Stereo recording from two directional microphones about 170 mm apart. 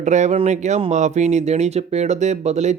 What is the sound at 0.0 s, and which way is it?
Speech, 45° right (ahead or behind).